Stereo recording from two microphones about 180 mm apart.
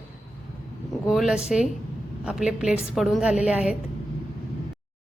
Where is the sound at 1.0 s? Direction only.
Centre (ahead or behind).